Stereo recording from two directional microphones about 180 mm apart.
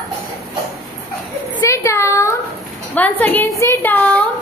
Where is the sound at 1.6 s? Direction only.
15° left (ahead or behind).